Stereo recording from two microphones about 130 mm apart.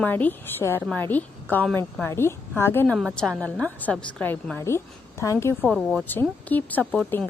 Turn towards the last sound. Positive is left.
turn(degrees=5)  # may be behind; listen again after turning